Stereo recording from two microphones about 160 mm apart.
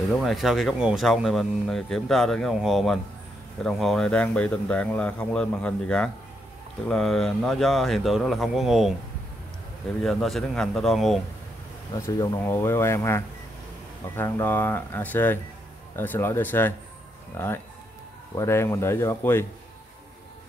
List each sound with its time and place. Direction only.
0.2 s a man's voice: centre (ahead or behind)
10.0 s speech: centre (ahead or behind)
12.2 s a man's voice: 20° left (ahead or behind)